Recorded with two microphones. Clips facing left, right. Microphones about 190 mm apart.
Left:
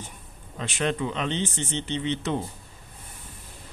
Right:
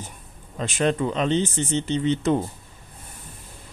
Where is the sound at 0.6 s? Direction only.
40° right (ahead or behind).